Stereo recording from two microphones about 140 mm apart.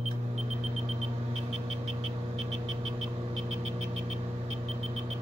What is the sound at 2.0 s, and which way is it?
Vehicle, 45° right (ahead or behind).